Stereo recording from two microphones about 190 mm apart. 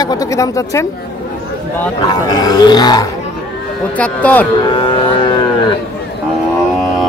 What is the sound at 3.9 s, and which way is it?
Speech, 5° left (ahead or behind).